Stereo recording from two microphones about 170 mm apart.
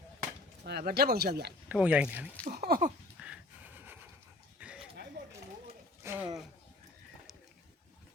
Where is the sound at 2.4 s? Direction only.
65° right (ahead or behind).